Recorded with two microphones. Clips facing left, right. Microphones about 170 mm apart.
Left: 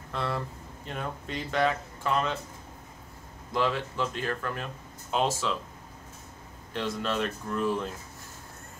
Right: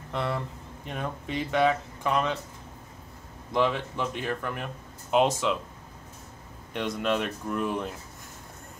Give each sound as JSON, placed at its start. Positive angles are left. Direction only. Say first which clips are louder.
{"t": 0.8, "sound": "speech", "louder": "right 2 dB", "side_deg": -10}
{"t": 3.5, "sound": "speech", "louder": "right 2 dB", "side_deg": -20}
{"t": 6.7, "sound": "speech", "louder": "right 3 dB", "side_deg": -15}